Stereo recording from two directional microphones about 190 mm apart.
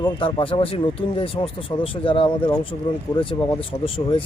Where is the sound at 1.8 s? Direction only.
30° left (ahead or behind).